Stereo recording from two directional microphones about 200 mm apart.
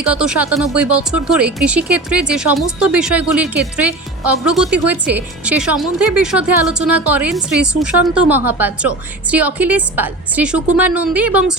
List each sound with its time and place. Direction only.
0.0 s a woman's voice: 5° right (ahead or behind)